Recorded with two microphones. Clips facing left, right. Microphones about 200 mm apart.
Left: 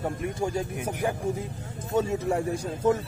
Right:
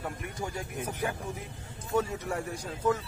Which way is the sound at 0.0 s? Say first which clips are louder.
Left 8 dB; 30° left (ahead or behind).